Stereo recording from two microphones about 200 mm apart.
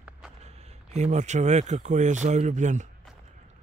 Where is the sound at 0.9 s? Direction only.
35° right (ahead or behind).